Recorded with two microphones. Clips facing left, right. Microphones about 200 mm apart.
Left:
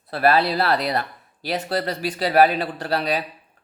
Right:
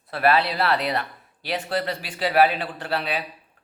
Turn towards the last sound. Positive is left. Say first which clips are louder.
# left 4 dB
turn(degrees=40)  # may be behind; listen again after turning